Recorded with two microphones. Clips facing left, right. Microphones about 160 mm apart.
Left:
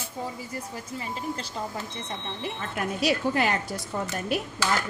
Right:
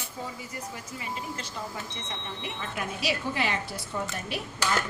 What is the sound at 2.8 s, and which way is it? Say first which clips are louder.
A woman's voice: left 6 dB; 45° left (ahead or behind).